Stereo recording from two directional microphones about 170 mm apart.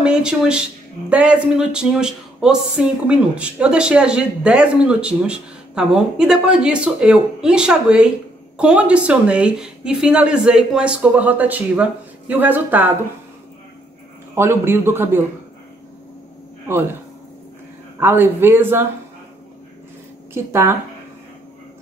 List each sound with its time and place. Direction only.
0.0 s a woman's voice: 5° right (ahead or behind)
14.3 s a woman's voice: 15° right (ahead or behind)
16.6 s speech: 15° right (ahead or behind)
17.9 s a woman's voice: 15° right (ahead or behind)
20.3 s a woman's voice: 15° right (ahead or behind)